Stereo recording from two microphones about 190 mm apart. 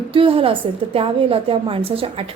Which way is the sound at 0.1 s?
30° right (ahead or behind).